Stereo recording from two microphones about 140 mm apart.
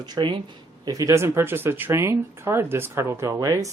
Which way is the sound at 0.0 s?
30° right (ahead or behind).